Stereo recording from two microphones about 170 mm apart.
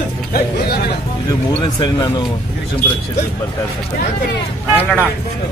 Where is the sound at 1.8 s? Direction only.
25° left (ahead or behind).